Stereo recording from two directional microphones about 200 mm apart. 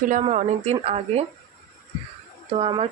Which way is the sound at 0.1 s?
35° right (ahead or behind).